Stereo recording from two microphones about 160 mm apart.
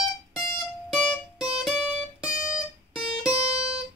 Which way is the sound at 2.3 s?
55° left (ahead or behind).